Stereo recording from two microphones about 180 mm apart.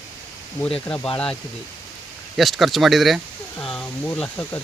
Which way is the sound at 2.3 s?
Centre (ahead or behind).